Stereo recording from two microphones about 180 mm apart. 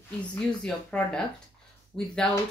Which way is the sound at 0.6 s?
5° left (ahead or behind).